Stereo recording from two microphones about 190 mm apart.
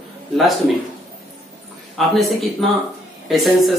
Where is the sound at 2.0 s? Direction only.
Centre (ahead or behind).